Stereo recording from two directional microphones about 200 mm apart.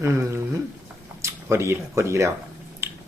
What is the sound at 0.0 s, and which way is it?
Speech, 15° right (ahead or behind).